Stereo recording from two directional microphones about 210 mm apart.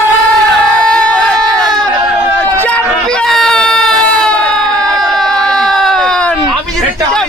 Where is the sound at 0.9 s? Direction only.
5° left (ahead or behind).